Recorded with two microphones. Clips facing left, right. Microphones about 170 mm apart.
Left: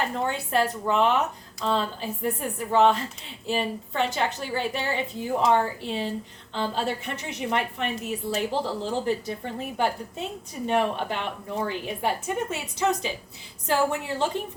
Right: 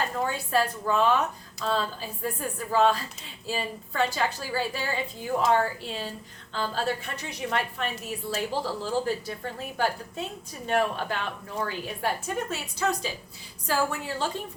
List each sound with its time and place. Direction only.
0.3 s a woman's voice: 20° left (ahead or behind)